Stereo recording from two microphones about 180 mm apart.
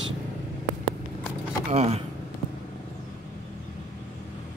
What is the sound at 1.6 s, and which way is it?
Speech, 35° right (ahead or behind).